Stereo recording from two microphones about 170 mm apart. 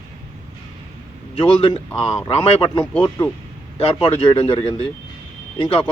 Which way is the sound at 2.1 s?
30° left (ahead or behind).